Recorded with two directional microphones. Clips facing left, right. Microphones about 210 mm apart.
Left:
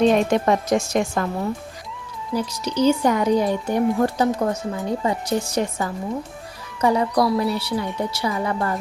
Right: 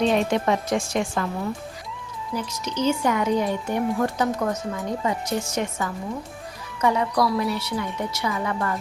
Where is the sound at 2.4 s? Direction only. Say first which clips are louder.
Left 6 dB; 35° left (ahead or behind).